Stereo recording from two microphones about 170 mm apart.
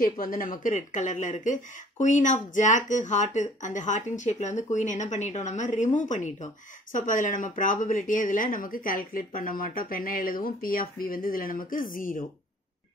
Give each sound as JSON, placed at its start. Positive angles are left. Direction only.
{"t": 0.0, "sound": "speech", "side_deg": 55}